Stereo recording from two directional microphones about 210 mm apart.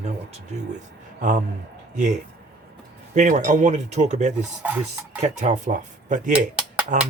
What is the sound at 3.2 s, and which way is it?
Speech, 35° right (ahead or behind).